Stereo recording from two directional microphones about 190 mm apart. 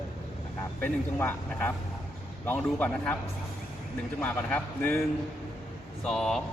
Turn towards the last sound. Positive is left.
turn(degrees=5)  # may be behind; listen again after turning